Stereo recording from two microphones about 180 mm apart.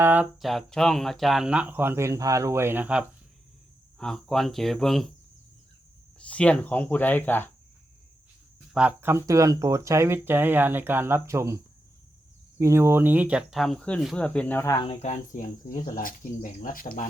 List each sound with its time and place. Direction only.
0.0 s speech: 10° right (ahead or behind)
0.4 s speech: centre (ahead or behind)
3.9 s speech: 5° left (ahead or behind)
6.1 s speech: 5° left (ahead or behind)
8.7 s speech: 5° right (ahead or behind); by 14.8 s 15° left (ahead or behind)
14.8 s speech: 40° left (ahead or behind)